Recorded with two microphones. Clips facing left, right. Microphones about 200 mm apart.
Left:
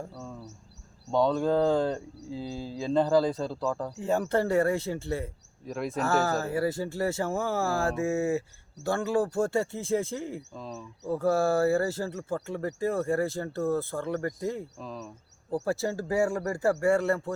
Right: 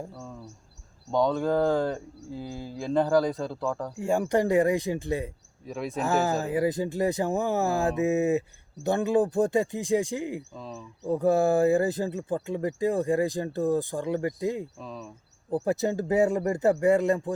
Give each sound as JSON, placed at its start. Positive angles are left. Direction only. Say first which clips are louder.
{"t": 1.1, "sound": "speech", "louder": "even", "side_deg": 0}
{"t": 3.2, "sound": "speech", "louder": "even", "side_deg": 0}
{"t": 3.9, "sound": "speech", "louder": "right 3 dB", "side_deg": -10}
{"t": 5.6, "sound": "speech", "louder": "even", "side_deg": 0}
{"t": 6.0, "sound": "speech", "louder": "right 1 dB", "side_deg": -15}
{"t": 10.5, "sound": "speech", "louder": "even", "side_deg": 0}
{"t": 11.1, "sound": "speech", "louder": "right 3 dB", "side_deg": -20}
{"t": 14.8, "sound": "speech", "louder": "even", "side_deg": 0}
{"t": 15.6, "sound": "speech", "louder": "right 4 dB", "side_deg": -20}